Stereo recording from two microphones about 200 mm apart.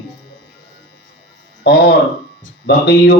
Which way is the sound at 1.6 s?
55° left (ahead or behind).